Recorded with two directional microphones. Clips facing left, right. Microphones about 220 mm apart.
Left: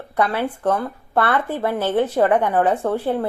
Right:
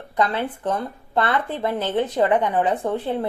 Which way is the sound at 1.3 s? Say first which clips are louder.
Left 2 dB; 10° left (ahead or behind).